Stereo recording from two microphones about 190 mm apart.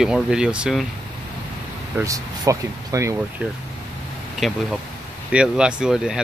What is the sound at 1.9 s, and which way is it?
Speech, 15° right (ahead or behind).